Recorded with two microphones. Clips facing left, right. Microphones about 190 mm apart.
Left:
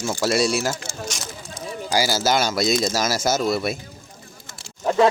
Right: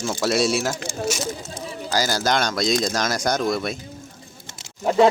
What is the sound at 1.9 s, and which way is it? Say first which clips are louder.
Speech: left 1 dB; 10° left (ahead or behind).